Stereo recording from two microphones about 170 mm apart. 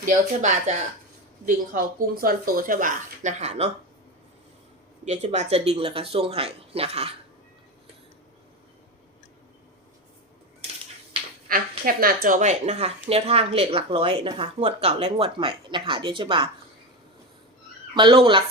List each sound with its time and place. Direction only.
0.0 s speech: 45° right (ahead or behind)
1.5 s speech: 55° right (ahead or behind); by 3.7 s 40° right (ahead or behind)
5.0 s speech: 40° right (ahead or behind)
11.4 s speech: 60° right (ahead or behind); by 16.5 s 30° right (ahead or behind)
17.9 s speech: 30° right (ahead or behind)